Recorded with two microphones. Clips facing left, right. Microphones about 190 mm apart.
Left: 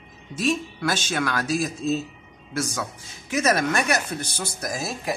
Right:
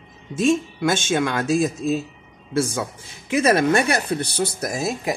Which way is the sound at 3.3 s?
30° right (ahead or behind).